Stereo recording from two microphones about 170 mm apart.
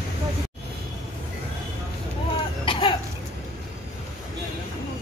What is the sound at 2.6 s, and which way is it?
Cough, 30° left (ahead or behind).